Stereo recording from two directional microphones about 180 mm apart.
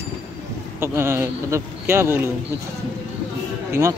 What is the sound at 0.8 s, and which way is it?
A man's voice, 15° right (ahead or behind).